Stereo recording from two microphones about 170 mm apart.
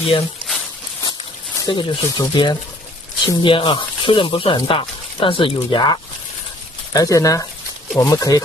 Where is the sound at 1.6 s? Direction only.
25° left (ahead or behind).